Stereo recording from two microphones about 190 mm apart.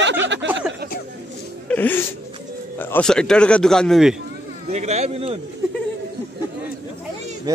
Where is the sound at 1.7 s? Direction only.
10° left (ahead or behind).